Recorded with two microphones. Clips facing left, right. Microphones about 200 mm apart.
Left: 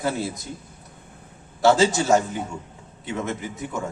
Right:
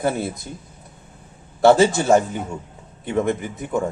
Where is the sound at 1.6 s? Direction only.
55° right (ahead or behind).